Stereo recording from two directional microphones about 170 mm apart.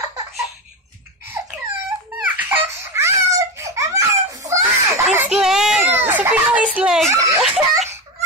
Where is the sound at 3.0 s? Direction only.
15° right (ahead or behind).